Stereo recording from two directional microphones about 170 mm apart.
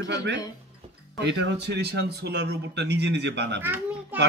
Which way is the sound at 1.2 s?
90° right.